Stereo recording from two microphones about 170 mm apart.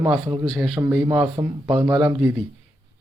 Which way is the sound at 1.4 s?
20° right (ahead or behind).